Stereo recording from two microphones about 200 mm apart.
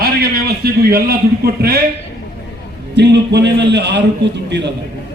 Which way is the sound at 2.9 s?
60° right (ahead or behind).